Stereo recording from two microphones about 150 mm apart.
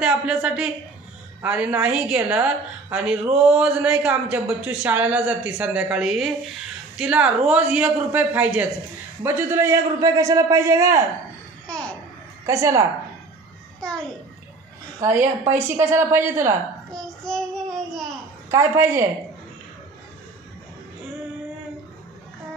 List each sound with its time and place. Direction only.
0.0 s a woman's voice: 5° right (ahead or behind)
11.6 s babbling: 5° left (ahead or behind)
12.4 s a man's voice: 20° right (ahead or behind)
13.7 s a sound: 5° left (ahead or behind)
15.0 s a woman's voice: 20° right (ahead or behind)
16.9 s child singing: 5° left (ahead or behind)
18.5 s a man's voice: 20° right (ahead or behind)